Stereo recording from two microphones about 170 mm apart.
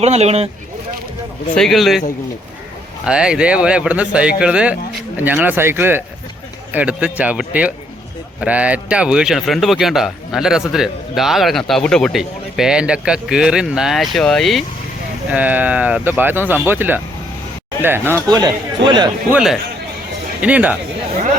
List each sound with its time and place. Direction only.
0.0 s speech: 40° right (ahead or behind)
1.5 s speech: centre (ahead or behind)
15.3 s speech: 10° right (ahead or behind); by 19.1 s 25° right (ahead or behind)
19.3 s speech: 5° right (ahead or behind)